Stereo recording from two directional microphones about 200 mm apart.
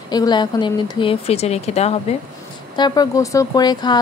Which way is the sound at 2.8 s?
20° left (ahead or behind).